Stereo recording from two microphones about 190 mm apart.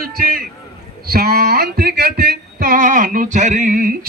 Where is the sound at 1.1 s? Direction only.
55° right (ahead or behind).